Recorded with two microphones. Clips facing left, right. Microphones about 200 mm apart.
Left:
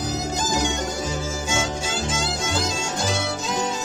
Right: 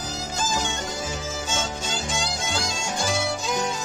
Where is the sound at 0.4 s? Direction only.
15° left (ahead or behind).